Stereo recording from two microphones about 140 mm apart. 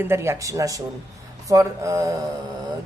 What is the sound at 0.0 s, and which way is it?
A woman's voice, 20° right (ahead or behind).